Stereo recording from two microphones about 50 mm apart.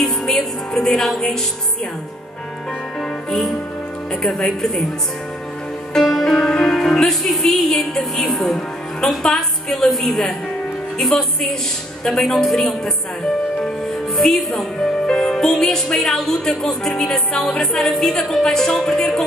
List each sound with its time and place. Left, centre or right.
0.0 s music: centre
3.0 s music: centre
4.1 s speech: centre
5.9 s music: centre
8.3 s a woman's voice: centre
14.1 s a woman's voice: centre